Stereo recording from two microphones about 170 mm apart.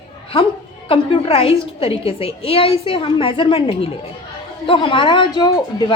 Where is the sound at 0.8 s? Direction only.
30° left (ahead or behind).